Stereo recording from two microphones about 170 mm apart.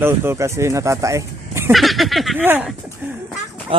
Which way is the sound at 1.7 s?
Centre (ahead or behind).